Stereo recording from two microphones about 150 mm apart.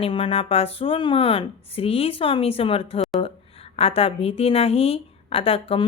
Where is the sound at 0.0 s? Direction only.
40° left (ahead or behind).